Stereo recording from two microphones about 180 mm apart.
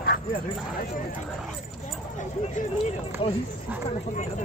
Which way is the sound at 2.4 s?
35° left (ahead or behind).